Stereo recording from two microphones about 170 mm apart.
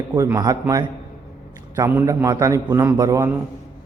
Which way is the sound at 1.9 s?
15° right (ahead or behind).